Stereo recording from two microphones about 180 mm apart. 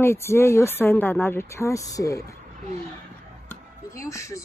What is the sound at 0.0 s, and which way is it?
Speech, 15° left (ahead or behind).